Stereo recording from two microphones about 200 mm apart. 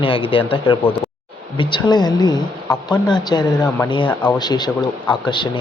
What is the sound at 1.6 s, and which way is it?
Speech, 20° left (ahead or behind).